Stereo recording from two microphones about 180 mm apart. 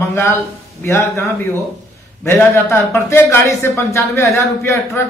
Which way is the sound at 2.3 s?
15° left (ahead or behind).